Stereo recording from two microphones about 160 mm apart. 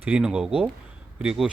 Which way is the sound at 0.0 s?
5° right (ahead or behind).